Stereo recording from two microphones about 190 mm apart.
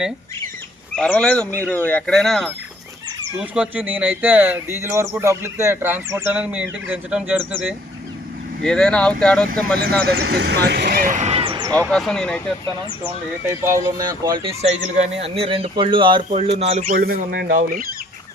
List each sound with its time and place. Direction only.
0.9 s speech: 5° left (ahead or behind)
8.6 s speech: 5° left (ahead or behind)
9.7 s speech: 55° right (ahead or behind); by 11.7 s 25° right (ahead or behind)
11.7 s speech: 5° left (ahead or behind)
13.0 s speech: 10° right (ahead or behind); by 17.8 s 50° right (ahead or behind)